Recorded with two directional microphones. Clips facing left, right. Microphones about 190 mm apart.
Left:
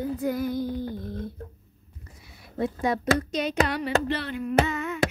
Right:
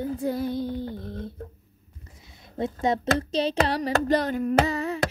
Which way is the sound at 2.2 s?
20° right (ahead or behind).